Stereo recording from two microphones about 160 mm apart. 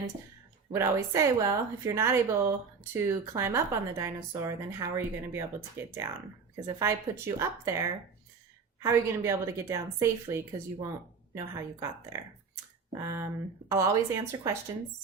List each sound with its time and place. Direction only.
0.7 s a woman's voice: 15° right (ahead or behind)
11.3 s a woman's voice: 20° right (ahead or behind)